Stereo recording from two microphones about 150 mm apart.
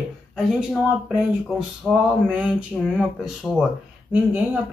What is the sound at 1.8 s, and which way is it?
Speech, centre (ahead or behind).